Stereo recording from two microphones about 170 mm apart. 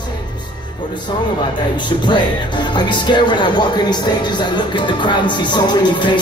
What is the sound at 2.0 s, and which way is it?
Speech, 25° left (ahead or behind).